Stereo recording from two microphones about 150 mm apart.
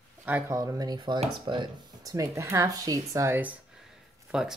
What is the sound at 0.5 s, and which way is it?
Speech, 20° right (ahead or behind).